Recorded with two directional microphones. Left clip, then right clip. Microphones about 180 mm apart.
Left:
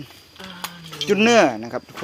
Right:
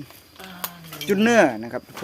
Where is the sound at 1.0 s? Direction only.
10° right (ahead or behind).